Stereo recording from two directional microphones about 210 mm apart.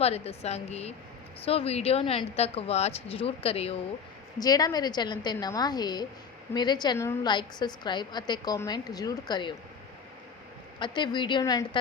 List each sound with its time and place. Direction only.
0.0 s a woman's voice: 30° left (ahead or behind)
4.4 s a woman's voice: 20° left (ahead or behind)
10.8 s a woman's voice: 20° left (ahead or behind)